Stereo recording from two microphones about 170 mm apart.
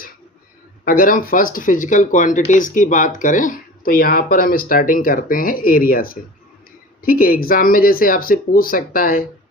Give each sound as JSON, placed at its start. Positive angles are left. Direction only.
{"t": 0.9, "sound": "speech", "side_deg": 55}